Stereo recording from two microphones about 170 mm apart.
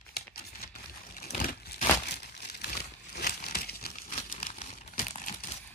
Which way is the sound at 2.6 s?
70° left (ahead or behind).